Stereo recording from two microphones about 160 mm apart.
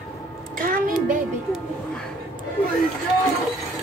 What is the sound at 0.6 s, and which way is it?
Speech, 60° right (ahead or behind).